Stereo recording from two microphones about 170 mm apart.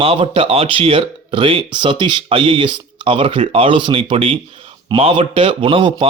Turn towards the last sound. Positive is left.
turn(degrees=-30)  # may be behind; listen again after turning